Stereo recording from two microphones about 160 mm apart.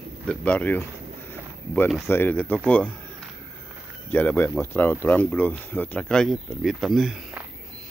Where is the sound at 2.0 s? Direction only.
10° left (ahead or behind).